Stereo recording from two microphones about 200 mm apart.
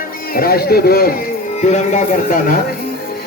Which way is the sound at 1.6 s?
35° left (ahead or behind).